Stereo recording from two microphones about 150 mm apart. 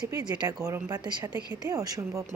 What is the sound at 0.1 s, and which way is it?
Speech, 25° right (ahead or behind).